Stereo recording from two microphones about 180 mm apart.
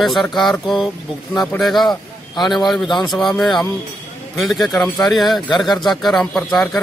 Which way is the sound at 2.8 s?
25° left (ahead or behind).